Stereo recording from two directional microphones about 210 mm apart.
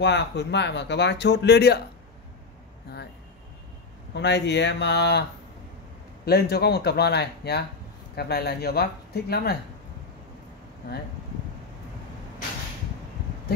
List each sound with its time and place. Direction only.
0.0 s speech: 55° left (ahead or behind)
4.1 s speech: 55° left (ahead or behind)
6.2 s speech: 50° left (ahead or behind)
10.8 s speech: 50° left (ahead or behind)